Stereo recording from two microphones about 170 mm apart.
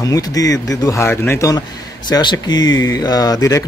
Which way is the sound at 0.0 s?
20° left (ahead or behind).